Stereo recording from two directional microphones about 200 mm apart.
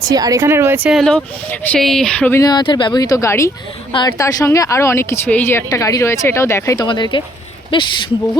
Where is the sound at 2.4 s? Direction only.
20° left (ahead or behind).